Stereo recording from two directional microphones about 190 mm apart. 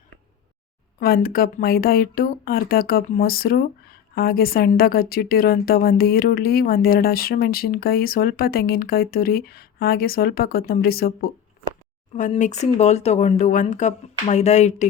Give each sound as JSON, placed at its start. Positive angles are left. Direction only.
{"t": 0.9, "sound": "speech", "side_deg": 55}
{"t": 12.1, "sound": "speech", "side_deg": 40}